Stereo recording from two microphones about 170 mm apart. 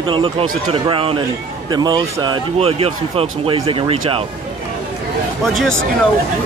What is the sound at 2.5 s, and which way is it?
A man's voice, 35° right (ahead or behind).